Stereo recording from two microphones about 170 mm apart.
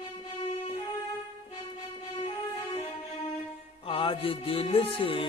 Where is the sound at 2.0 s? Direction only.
35° left (ahead or behind).